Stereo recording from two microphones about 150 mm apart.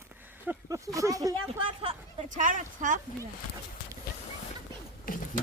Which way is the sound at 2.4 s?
60° right (ahead or behind).